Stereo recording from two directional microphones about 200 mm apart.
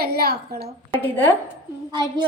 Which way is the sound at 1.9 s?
20° right (ahead or behind).